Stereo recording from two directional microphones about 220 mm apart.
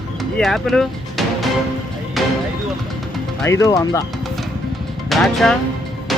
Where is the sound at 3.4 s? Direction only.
15° left (ahead or behind).